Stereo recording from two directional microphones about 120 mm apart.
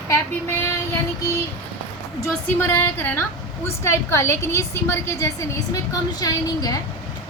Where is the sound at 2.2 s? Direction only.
20° left (ahead or behind).